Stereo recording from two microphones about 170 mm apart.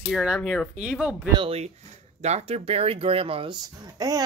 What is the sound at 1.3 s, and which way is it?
Speech, 35° right (ahead or behind).